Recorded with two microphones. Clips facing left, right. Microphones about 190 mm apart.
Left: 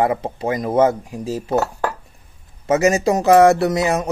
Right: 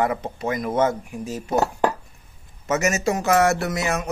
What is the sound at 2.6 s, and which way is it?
Speech, 30° left (ahead or behind).